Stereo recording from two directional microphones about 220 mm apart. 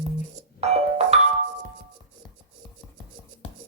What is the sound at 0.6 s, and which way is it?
Music, 30° right (ahead or behind).